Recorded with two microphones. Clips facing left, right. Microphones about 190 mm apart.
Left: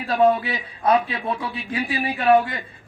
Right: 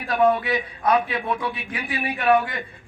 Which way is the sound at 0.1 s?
30° left (ahead or behind).